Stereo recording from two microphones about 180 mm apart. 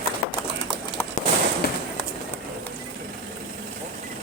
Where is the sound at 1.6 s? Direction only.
60° left (ahead or behind).